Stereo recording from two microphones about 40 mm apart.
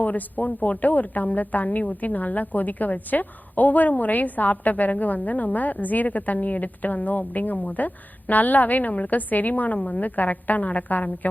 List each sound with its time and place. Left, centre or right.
0.0 s a woman's voice: left
9.7 s a woman's voice: left
10.0 s a woman's voice: left